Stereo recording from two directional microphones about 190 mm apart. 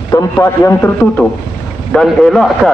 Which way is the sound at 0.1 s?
20° left (ahead or behind).